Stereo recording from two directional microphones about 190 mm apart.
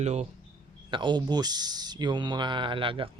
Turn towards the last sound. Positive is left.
turn(degrees=-25)  # may be behind; listen again after turning